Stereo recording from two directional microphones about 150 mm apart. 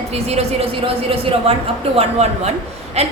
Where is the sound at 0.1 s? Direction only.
45° right (ahead or behind).